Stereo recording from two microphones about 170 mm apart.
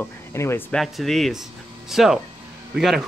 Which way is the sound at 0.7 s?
Centre (ahead or behind).